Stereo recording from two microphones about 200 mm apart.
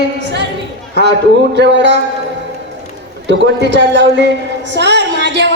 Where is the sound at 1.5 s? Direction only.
60° right (ahead or behind).